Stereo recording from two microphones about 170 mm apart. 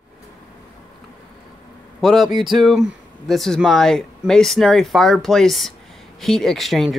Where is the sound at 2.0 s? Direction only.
Centre (ahead or behind).